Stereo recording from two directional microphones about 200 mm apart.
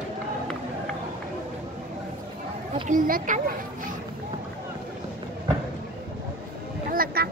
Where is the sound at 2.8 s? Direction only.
40° right (ahead or behind).